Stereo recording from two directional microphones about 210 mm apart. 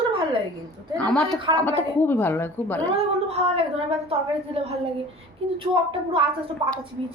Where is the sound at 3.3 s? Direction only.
30° right (ahead or behind).